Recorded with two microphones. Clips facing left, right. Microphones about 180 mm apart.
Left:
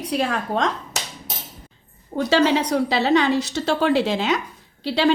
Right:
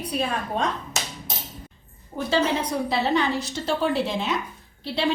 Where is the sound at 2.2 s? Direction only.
85° left.